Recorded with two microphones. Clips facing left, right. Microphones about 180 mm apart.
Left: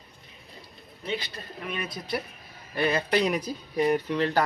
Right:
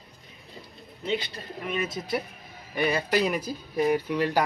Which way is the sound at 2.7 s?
10° right (ahead or behind).